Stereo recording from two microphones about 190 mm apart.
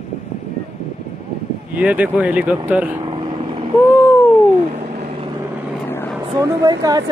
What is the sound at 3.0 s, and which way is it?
Vehicle, 25° right (ahead or behind).